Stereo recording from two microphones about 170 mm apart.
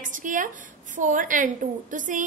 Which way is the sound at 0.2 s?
50° right (ahead or behind).